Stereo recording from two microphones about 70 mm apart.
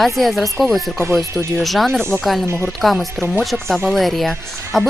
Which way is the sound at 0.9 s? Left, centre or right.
Right.